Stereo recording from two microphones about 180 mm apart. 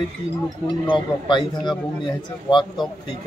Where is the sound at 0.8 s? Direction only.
25° left (ahead or behind).